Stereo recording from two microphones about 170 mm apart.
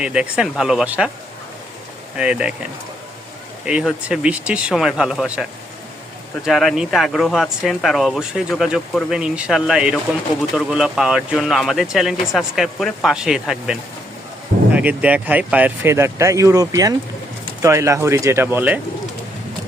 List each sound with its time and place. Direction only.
0.0 s speech: 5° right (ahead or behind)
2.1 s speech: 5° right (ahead or behind)
3.7 s speech: 5° right (ahead or behind)